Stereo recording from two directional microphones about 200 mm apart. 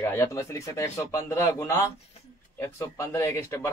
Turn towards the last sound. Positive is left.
turn(degrees=10)  # may be behind; listen again after turning